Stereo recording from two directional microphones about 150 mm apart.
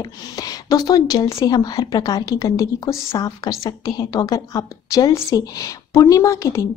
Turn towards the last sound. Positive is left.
turn(degrees=20)  # may be behind; listen again after turning